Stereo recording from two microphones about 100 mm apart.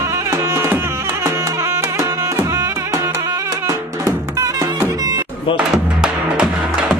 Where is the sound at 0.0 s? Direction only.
35° right (ahead or behind).